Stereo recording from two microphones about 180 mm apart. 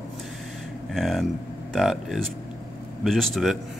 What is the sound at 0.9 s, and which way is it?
Speech, centre (ahead or behind).